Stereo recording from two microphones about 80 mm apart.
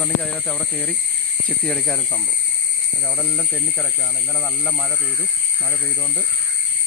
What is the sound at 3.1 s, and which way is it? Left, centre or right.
Speech, centre.